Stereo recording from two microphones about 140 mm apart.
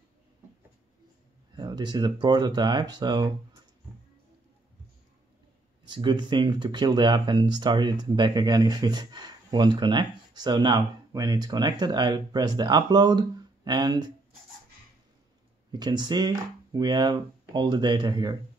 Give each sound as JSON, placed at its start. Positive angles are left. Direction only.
{"t": 1.6, "sound": "speech", "side_deg": -30}
{"t": 5.9, "sound": "speech", "side_deg": -35}
{"t": 15.7, "sound": "speech", "side_deg": -30}